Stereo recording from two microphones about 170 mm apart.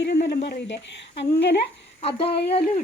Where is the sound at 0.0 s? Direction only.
90° left.